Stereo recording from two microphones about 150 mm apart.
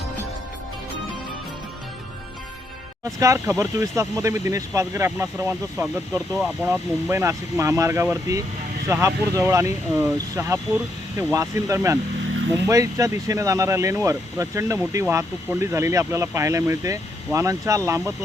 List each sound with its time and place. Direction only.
3.0 s speech: 20° right (ahead or behind)